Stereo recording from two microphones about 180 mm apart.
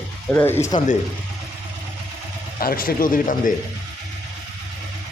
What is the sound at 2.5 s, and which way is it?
Speech, 55° left (ahead or behind).